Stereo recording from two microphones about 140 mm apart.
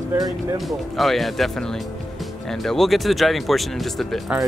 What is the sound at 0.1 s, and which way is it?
Speech, 20° right (ahead or behind).